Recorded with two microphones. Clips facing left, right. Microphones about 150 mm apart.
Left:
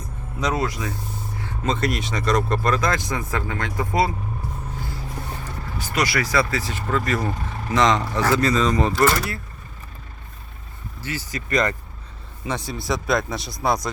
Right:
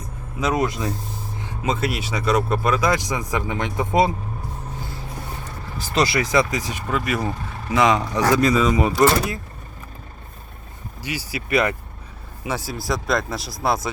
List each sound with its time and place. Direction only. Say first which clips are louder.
0.3 s speech: right 2 dB; 5° right (ahead or behind)
0.6 s speech: right 3 dB; 30° right (ahead or behind)
1.4 s speech: even; 15° right (ahead or behind)
5.8 s speech: right 3 dB; 30° right (ahead or behind)
11.0 s speech: right 1 dB; 10° right (ahead or behind)